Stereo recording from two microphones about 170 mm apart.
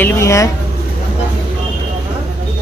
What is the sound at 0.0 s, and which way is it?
Speech, 15° left (ahead or behind).